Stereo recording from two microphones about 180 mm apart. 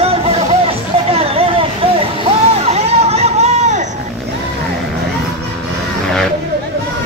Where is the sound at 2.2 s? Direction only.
35° right (ahead or behind).